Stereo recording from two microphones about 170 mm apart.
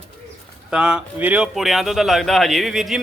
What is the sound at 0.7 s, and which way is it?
Speech, 5° right (ahead or behind).